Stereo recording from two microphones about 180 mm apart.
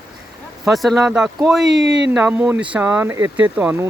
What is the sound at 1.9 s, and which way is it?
Speech, 75° right (ahead or behind).